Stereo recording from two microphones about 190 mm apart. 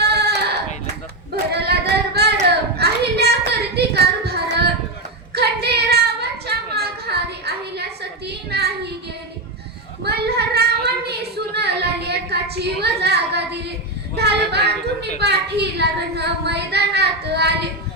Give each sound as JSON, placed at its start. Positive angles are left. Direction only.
{"t": 0.0, "sound": "sheep", "side_deg": -60}
{"t": 1.5, "sound": "singing", "side_deg": -60}
{"t": 2.1, "sound": "child singing", "side_deg": -60}
{"t": 3.8, "sound": "a sound", "side_deg": -60}
{"t": 10.0, "sound": "child singing", "side_deg": -60}
{"t": 14.2, "sound": "female singing", "side_deg": -60}
{"t": 15.2, "sound": "child singing", "side_deg": -60}